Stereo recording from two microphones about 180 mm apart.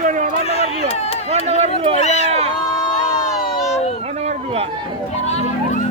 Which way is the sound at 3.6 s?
35° left (ahead or behind).